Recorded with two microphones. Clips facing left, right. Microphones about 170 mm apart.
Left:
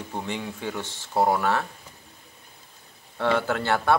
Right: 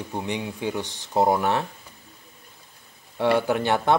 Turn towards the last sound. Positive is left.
turn(degrees=-15)  # may be behind; listen again after turning